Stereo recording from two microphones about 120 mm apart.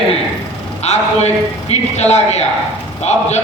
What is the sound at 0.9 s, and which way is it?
A man's voice, 65° left (ahead or behind).